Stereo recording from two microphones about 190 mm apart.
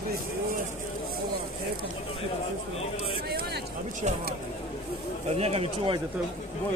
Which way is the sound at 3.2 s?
55° right (ahead or behind).